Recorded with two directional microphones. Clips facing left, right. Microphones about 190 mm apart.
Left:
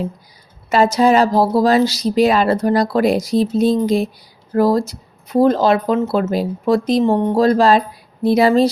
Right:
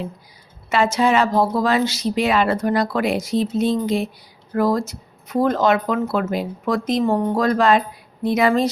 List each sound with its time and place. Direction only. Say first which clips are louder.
0.7 s speech: left 5 dB; 40° left (ahead or behind)